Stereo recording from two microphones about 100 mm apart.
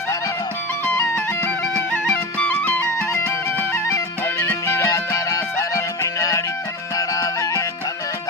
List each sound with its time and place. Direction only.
0.9 s music: 25° left (ahead or behind)